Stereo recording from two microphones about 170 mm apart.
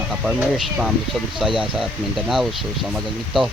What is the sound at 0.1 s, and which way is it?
Speech, 5° right (ahead or behind).